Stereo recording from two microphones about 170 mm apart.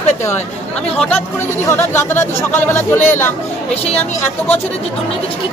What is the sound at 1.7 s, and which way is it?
Speech, 15° left (ahead or behind).